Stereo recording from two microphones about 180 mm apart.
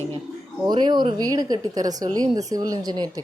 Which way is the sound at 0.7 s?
25° right (ahead or behind).